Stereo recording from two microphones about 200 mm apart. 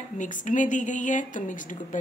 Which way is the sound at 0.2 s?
40° left (ahead or behind).